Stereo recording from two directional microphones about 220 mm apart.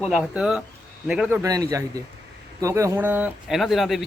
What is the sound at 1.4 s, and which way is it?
Speech, 15° right (ahead or behind).